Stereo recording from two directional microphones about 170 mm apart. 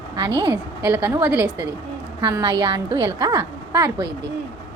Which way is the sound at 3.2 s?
20° right (ahead or behind).